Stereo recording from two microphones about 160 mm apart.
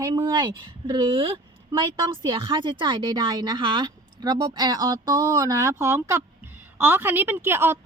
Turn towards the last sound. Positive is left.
turn(degrees=-15)  # may be behind; listen again after turning